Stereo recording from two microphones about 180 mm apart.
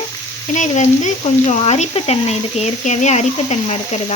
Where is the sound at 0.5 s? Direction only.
40° left (ahead or behind).